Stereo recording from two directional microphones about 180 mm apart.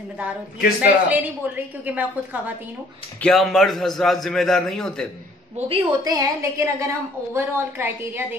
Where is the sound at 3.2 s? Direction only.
Centre (ahead or behind).